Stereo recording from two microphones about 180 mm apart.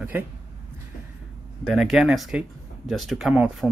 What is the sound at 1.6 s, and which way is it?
Speech, centre (ahead or behind).